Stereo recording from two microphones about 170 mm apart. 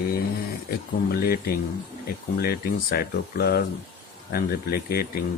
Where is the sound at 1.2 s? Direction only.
60° left (ahead or behind).